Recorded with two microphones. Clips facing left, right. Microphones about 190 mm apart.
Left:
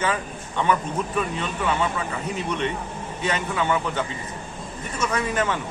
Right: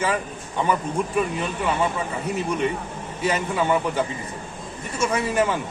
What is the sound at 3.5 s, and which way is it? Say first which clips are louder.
Speech: right 3 dB; 35° right (ahead or behind).